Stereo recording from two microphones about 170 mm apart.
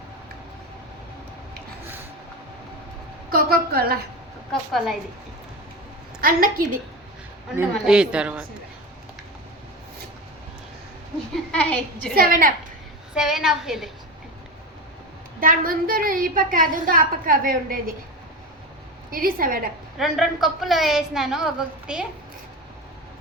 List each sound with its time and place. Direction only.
3.3 s a woman's voice: 60° right (ahead or behind)
6.2 s a woman's voice: 55° right (ahead or behind)
7.5 s a woman's voice: 10° right (ahead or behind)
11.5 s a woman's voice: 10° left (ahead or behind)
12.1 s a woman's voice: 55° right (ahead or behind)
13.1 s a woman's voice: 5° right (ahead or behind)
15.4 s a woman's voice: 55° right (ahead or behind)
19.1 s a woman's voice: 55° right (ahead or behind)
20.0 s a woman's voice: centre (ahead or behind)